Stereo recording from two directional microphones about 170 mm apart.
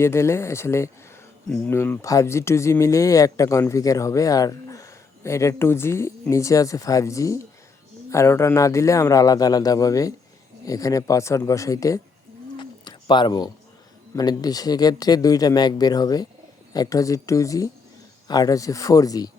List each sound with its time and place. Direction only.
0.0 s a man's voice: 15° left (ahead or behind)
12.5 s a sound: 25° left (ahead or behind)
14.2 s a man's voice: 20° left (ahead or behind)